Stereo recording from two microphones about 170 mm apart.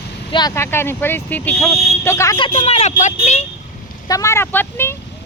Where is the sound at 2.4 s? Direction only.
30° left (ahead or behind).